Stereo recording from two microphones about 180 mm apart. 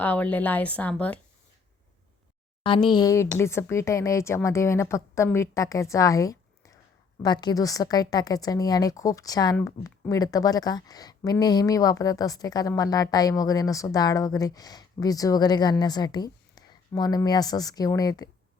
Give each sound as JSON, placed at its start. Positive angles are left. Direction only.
{"t": 0.0, "sound": "a woman's voice", "side_deg": 10}
{"t": 2.6, "sound": "a woman's voice", "side_deg": 25}